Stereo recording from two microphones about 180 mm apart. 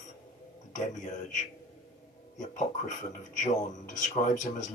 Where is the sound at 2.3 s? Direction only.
45° left (ahead or behind).